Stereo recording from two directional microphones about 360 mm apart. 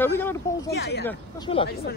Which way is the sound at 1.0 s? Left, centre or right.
Centre.